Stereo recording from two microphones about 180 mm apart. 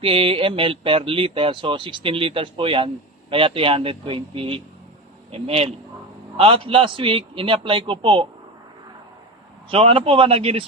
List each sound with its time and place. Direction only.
0.0 s speech: 30° right (ahead or behind)
9.6 s speech: 30° right (ahead or behind)